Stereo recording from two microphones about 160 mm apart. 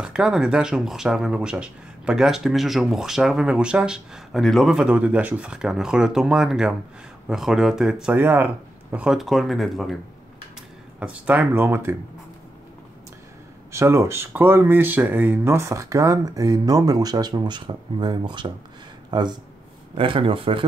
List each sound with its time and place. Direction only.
0.0 s speech: 5° right (ahead or behind)
11.0 s speech: 10° right (ahead or behind)
13.7 s speech: 15° right (ahead or behind); by 20.6 s 35° right (ahead or behind)